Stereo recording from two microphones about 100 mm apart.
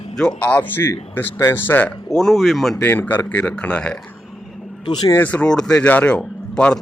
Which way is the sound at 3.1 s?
20° left (ahead or behind).